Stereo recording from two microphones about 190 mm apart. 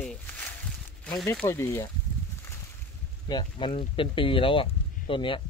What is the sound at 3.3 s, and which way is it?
Speech, 25° left (ahead or behind).